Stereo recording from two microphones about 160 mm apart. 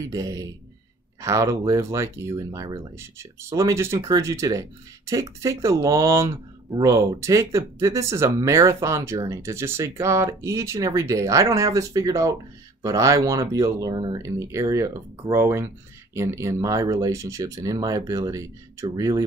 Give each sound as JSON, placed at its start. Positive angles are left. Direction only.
{"t": 0.0, "sound": "speech", "side_deg": -20}